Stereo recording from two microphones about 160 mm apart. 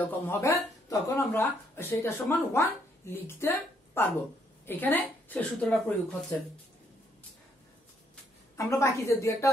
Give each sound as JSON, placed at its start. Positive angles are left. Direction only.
{"t": 0.0, "sound": "a woman's voice", "side_deg": 15}
{"t": 8.5, "sound": "a woman's voice", "side_deg": 20}